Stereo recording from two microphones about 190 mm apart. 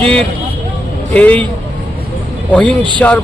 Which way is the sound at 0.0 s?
5° left (ahead or behind).